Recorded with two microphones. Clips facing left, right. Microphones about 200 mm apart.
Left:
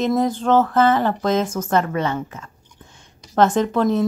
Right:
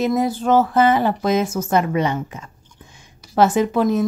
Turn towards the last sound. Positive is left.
turn(degrees=-10)  # may be behind; listen again after turning